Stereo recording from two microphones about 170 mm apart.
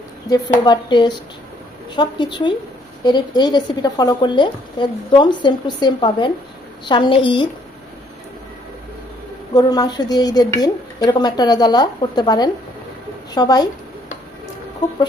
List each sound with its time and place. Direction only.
0.3 s speech: 25° left (ahead or behind)
9.6 s speech: 25° left (ahead or behind)
14.8 s speech: 25° left (ahead or behind)